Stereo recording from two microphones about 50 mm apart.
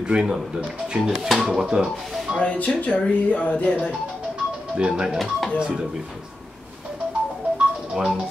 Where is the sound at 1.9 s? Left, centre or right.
Centre.